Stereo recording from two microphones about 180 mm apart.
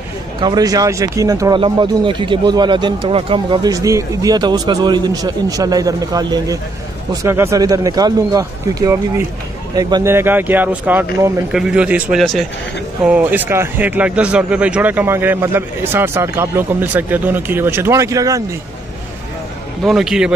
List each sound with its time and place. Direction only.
0.4 s speech: 20° right (ahead or behind)
19.8 s a man's voice: centre (ahead or behind)